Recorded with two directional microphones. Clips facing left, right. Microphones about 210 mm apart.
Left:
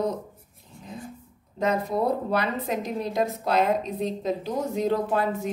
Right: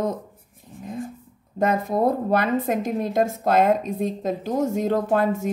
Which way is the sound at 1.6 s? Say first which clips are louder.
Right 4 dB; 50° right (ahead or behind).